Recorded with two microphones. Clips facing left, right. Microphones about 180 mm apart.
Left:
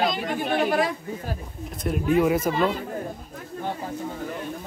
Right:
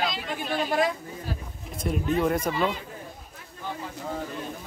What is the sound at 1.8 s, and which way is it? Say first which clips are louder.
Speech: left 4 dB; 5° left (ahead or behind).